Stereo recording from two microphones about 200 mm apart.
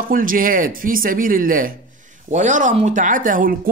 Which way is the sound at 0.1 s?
45° right (ahead or behind).